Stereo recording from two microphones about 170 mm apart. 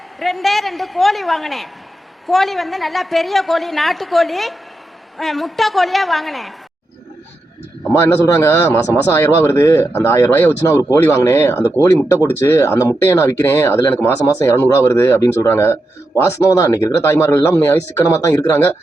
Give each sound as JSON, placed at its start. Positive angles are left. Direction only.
{"t": 0.2, "sound": "a woman's voice", "side_deg": 0}
{"t": 8.4, "sound": "speech", "side_deg": 15}